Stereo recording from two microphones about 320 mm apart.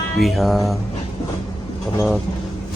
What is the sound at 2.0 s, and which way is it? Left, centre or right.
Speech, centre.